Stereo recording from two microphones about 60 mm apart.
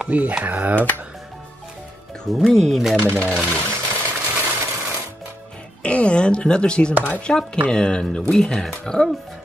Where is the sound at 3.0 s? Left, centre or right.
Right.